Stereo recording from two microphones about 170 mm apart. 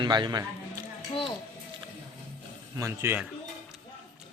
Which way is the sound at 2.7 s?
15° right (ahead or behind).